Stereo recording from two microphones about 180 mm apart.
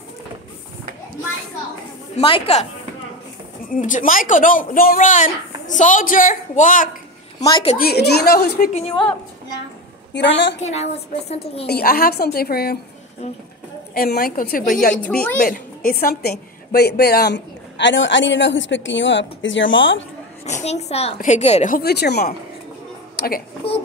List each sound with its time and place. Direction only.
2.1 s a woman's voice: 30° left (ahead or behind)
3.7 s speech: 45° left (ahead or behind)
7.7 s a woman's voice: 60° left (ahead or behind)
8.7 s a woman's voice: 30° left (ahead or behind)
10.1 s a woman's voice: 85° left
10.6 s a woman's voice: 35° left (ahead or behind)
11.6 s a woman's voice: 60° left (ahead or behind)
13.9 s a woman's voice: 55° left (ahead or behind); by 20.1 s 90° left
20.6 s a woman's voice: 35° left (ahead or behind)
21.7 s a woman's voice: 65° left (ahead or behind)